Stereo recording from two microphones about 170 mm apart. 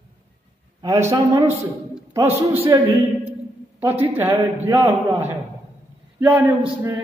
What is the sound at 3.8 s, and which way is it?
A man's voice, 10° right (ahead or behind).